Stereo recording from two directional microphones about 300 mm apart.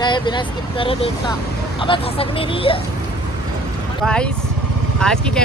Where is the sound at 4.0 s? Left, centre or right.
Centre.